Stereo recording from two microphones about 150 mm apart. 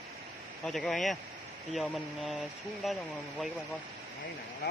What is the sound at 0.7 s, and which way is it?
Speech, centre (ahead or behind).